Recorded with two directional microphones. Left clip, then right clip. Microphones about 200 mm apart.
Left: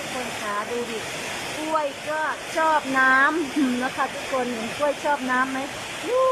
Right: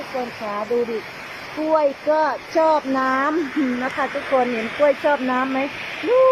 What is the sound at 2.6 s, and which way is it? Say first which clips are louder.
Speech: right 5 dB; 20° right (ahead or behind).